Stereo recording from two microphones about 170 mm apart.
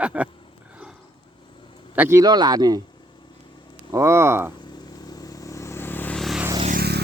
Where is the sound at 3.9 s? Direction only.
15° right (ahead or behind).